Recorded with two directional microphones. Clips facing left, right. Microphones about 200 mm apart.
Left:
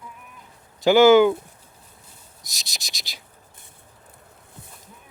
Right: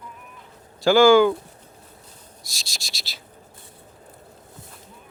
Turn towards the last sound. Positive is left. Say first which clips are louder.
# right 1 dB
turn(degrees=15)  # may be behind; listen again after turning